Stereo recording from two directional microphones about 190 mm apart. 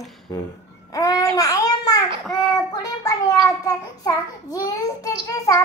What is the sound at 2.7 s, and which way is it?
A child's voice, 15° left (ahead or behind).